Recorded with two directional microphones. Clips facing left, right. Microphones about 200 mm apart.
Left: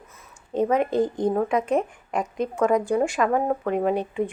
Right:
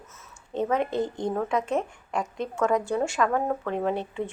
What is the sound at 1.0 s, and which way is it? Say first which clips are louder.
Speech: left 6 dB; 50° left (ahead or behind).